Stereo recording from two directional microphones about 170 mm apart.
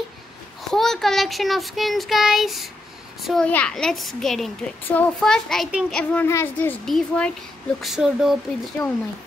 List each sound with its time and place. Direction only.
0.7 s a child's voice: centre (ahead or behind)
5.9 s a woman's voice: 10° left (ahead or behind)
8.8 s a woman's voice: 15° left (ahead or behind)